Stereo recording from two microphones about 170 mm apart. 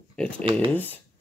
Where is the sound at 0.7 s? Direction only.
10° left (ahead or behind).